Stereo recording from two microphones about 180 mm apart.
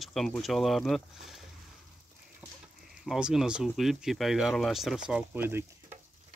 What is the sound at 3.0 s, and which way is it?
Speech, centre (ahead or behind).